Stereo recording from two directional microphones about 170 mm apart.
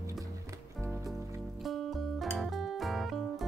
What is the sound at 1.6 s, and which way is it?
Music, centre (ahead or behind).